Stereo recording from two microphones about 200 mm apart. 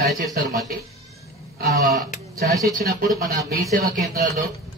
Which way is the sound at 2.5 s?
15° right (ahead or behind).